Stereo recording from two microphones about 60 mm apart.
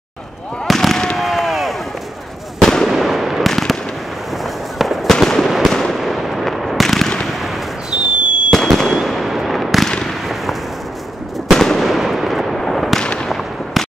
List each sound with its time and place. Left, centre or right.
0.7 s fireworks: centre
4.7 s fireworks: centre
7.9 s fireworks: centre
8.5 s fireworks: centre
9.8 s fireworks: centre
11.4 s fireworks: centre
13.0 s fireworks: centre
13.3 s artillery fire: centre